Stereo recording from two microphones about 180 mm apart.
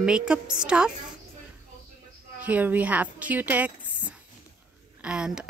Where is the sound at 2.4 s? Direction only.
10° right (ahead or behind).